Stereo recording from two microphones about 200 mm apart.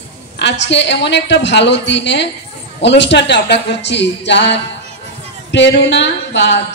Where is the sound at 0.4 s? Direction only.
60° left (ahead or behind).